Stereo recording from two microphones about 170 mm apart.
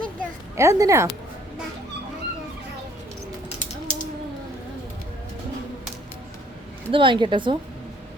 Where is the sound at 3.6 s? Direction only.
50° left (ahead or behind).